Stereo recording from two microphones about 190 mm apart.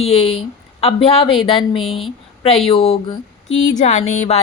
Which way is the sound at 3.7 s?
40° left (ahead or behind).